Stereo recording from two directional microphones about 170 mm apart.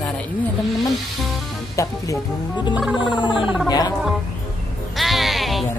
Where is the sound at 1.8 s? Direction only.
20° left (ahead or behind).